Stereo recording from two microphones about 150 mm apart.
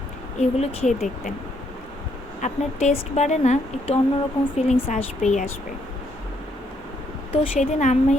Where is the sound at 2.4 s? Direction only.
50° left (ahead or behind).